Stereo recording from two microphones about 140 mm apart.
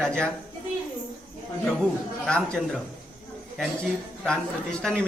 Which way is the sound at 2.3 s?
5° left (ahead or behind).